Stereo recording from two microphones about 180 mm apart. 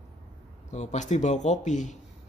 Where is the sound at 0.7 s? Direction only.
40° left (ahead or behind).